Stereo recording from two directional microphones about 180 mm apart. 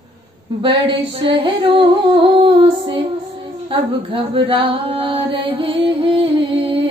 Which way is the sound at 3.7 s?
30° right (ahead or behind).